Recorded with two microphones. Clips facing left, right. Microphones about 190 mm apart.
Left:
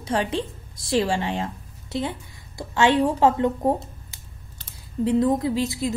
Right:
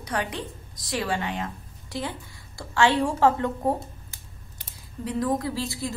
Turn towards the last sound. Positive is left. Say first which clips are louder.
# left 6 dB
turn(degrees=20)  # may be behind; listen again after turning